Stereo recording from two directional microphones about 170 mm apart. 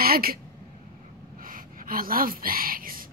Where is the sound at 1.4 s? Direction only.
55° right (ahead or behind).